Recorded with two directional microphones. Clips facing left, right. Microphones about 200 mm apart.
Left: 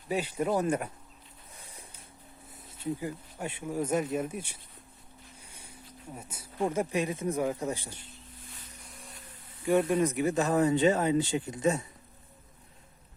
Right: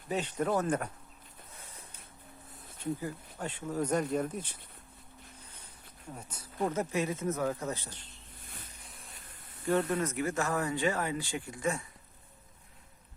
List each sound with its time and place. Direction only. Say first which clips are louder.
0.1 s speech: left 2 dB; 10° left (ahead or behind)
2.8 s speech: left 2 dB; 10° left (ahead or behind)
9.6 s speech: left 4 dB; 10° left (ahead or behind)